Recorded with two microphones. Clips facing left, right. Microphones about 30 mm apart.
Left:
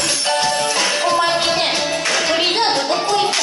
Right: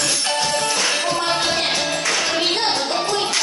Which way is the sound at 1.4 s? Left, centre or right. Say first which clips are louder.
Left 3 dB; left.